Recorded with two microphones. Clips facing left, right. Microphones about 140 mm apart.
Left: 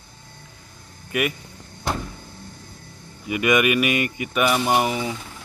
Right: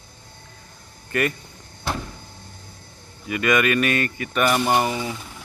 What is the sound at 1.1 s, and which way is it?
Speech, 10° left (ahead or behind).